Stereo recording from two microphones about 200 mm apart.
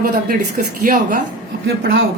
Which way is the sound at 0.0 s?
45° right (ahead or behind).